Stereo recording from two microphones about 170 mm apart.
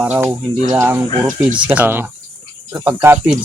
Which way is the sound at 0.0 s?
10° right (ahead or behind).